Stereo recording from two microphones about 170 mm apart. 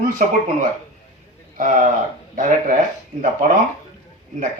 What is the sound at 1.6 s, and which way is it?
Speech, 50° right (ahead or behind).